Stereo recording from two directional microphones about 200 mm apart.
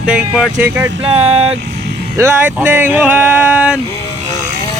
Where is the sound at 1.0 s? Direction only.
30° right (ahead or behind).